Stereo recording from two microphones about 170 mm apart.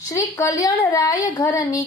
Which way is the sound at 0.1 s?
20° left (ahead or behind).